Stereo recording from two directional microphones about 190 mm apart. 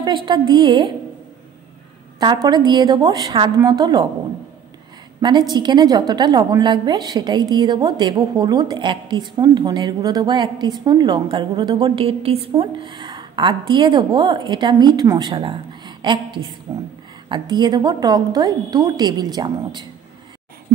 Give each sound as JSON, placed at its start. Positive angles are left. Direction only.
{"t": 0.0, "sound": "a woman's voice", "side_deg": -25}
{"t": 2.1, "sound": "a woman's voice", "side_deg": -20}
{"t": 5.5, "sound": "a woman's voice", "side_deg": -20}